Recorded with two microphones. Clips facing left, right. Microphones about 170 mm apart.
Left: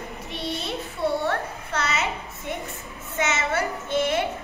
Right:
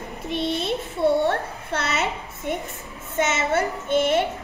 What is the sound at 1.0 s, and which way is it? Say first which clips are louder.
Speech: right 5 dB; 25° right (ahead or behind).